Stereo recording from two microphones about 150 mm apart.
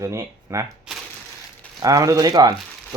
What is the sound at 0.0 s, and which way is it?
Speech, 20° right (ahead or behind).